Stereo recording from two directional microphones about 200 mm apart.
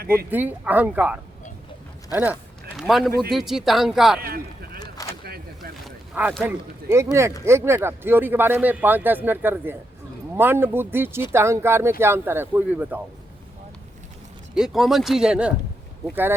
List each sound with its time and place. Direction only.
0.3 s speech: 10° right (ahead or behind)
2.7 s speech: centre (ahead or behind)
4.2 s a sound: 50° right (ahead or behind)
4.8 s a sound: 15° left (ahead or behind)
5.8 s speech: 5° right (ahead or behind)
14.5 s speech: centre (ahead or behind)